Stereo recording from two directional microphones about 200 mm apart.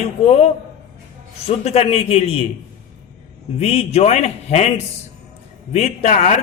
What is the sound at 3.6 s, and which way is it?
Speech, 30° left (ahead or behind).